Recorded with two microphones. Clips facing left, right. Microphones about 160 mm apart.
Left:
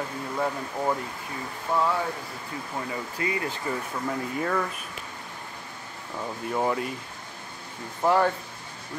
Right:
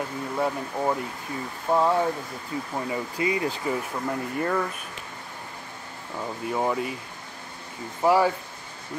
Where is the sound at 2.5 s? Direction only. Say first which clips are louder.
Right 6 dB; 30° right (ahead or behind).